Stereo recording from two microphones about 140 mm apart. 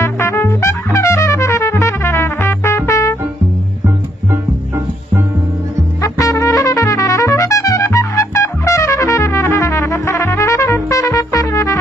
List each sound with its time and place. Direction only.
0.0 s trumpet: 20° left (ahead or behind)
3.8 s music: 15° right (ahead or behind)
6.0 s trumpet: 25° left (ahead or behind)